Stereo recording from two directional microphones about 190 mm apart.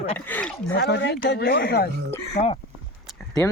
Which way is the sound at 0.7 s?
60° left (ahead or behind).